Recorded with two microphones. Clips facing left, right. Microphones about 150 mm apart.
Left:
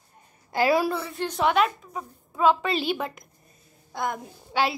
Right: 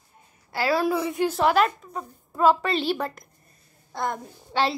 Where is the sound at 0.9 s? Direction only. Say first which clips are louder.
Right 6 dB; 15° right (ahead or behind).